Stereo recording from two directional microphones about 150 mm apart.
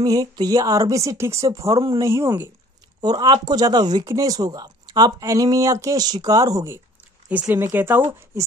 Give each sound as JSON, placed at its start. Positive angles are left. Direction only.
{"t": 0.0, "sound": "speech", "side_deg": -25}
{"t": 3.0, "sound": "speech", "side_deg": -25}
{"t": 7.2, "sound": "speech", "side_deg": -10}